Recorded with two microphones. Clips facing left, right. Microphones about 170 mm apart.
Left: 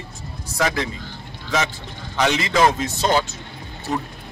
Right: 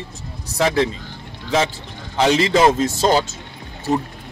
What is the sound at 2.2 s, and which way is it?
A man's voice, 35° right (ahead or behind).